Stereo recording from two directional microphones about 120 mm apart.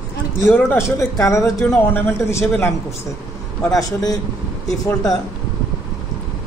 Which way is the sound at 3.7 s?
30° left (ahead or behind).